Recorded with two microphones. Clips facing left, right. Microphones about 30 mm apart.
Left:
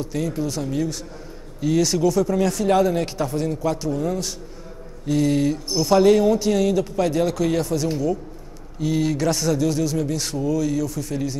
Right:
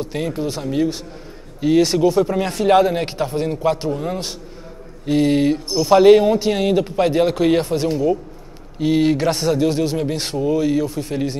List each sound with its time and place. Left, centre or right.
0.0 s speech: right